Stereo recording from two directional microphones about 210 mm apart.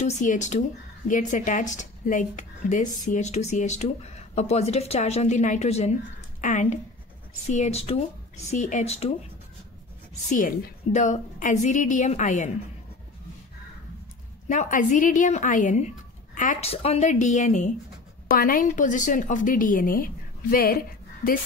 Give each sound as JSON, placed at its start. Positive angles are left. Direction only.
{"t": 0.0, "sound": "speech", "side_deg": 35}
{"t": 10.3, "sound": "speech", "side_deg": 35}
{"t": 14.5, "sound": "speech", "side_deg": 35}